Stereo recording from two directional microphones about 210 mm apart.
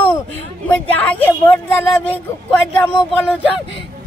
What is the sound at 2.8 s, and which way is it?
Speech, 5° left (ahead or behind).